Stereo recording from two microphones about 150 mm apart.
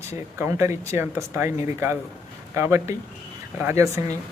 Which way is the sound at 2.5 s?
15° right (ahead or behind).